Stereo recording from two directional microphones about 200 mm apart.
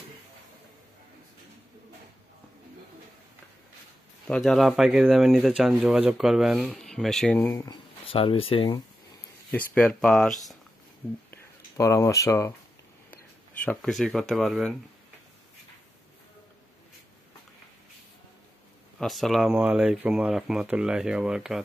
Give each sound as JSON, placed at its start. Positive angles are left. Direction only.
{"t": 4.3, "sound": "speech", "side_deg": 0}
{"t": 8.1, "sound": "speech", "side_deg": 25}
{"t": 9.5, "sound": "speech", "side_deg": 5}
{"t": 11.2, "sound": "a sound", "side_deg": 15}
{"t": 13.7, "sound": "speech", "side_deg": 5}
{"t": 18.9, "sound": "speech", "side_deg": 0}